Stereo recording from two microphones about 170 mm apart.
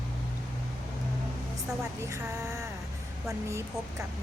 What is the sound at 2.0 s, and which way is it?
A woman's voice, 15° right (ahead or behind).